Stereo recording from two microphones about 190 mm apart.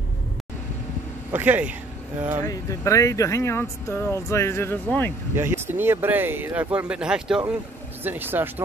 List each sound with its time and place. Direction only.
1.3 s speech: 10° right (ahead or behind)
2.4 s speech: 15° left (ahead or behind)
5.3 s speech: 10° right (ahead or behind)